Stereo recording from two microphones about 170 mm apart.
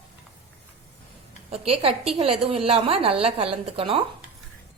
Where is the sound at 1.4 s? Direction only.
35° right (ahead or behind).